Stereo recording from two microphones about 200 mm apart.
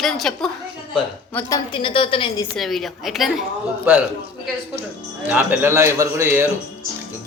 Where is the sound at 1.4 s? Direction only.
20° left (ahead or behind).